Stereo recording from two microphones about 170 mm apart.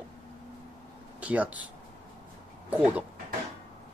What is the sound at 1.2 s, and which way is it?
Speech, 10° right (ahead or behind).